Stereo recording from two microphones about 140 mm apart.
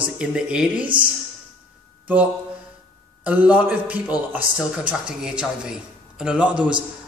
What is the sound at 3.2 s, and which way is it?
A man's voice, 10° right (ahead or behind).